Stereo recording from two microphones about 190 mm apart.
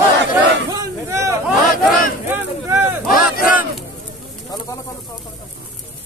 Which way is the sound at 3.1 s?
50° left (ahead or behind).